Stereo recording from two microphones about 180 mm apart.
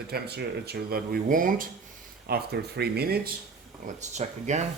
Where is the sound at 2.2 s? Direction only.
60° right (ahead or behind).